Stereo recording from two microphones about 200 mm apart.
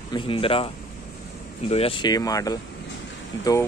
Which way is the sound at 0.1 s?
25° left (ahead or behind).